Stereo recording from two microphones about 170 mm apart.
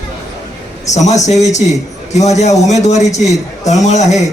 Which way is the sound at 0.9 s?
45° left (ahead or behind).